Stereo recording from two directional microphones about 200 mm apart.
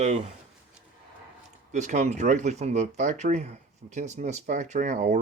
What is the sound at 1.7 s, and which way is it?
Speech, 35° right (ahead or behind).